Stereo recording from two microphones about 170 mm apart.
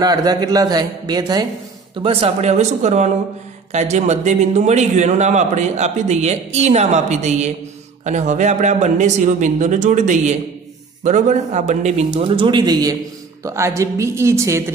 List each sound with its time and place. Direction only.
0.0 s a man's voice: 20° right (ahead or behind)
2.0 s a man's voice: 35° right (ahead or behind)
12.1 s a man's voice: 30° right (ahead or behind); by 14.6 s 15° right (ahead or behind)